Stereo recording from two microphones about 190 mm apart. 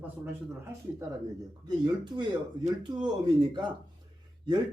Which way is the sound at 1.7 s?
20° right (ahead or behind).